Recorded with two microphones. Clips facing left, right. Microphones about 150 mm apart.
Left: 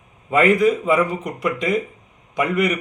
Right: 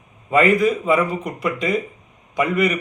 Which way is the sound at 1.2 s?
15° left (ahead or behind).